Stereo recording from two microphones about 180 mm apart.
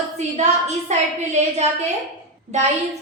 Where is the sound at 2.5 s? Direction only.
40° right (ahead or behind).